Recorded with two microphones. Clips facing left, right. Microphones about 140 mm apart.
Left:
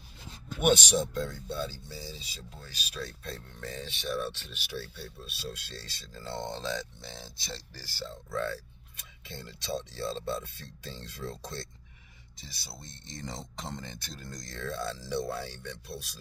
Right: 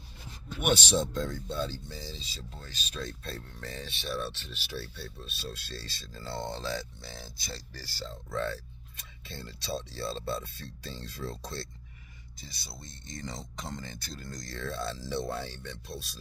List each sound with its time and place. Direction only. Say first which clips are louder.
0.7 s speech: even; 10° left (ahead or behind)
6.6 s speech: even; 5° right (ahead or behind)
7.9 s speech: left 1 dB; 15° left (ahead or behind)
12.4 s speech: even; centre (ahead or behind)
13.4 s speech: even; 25° left (ahead or behind)
13.7 s speech: right 1 dB; centre (ahead or behind)
14.4 s speech: even; 15° left (ahead or behind)